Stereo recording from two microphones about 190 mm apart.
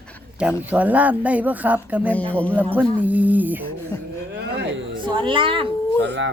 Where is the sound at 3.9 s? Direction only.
15° left (ahead or behind).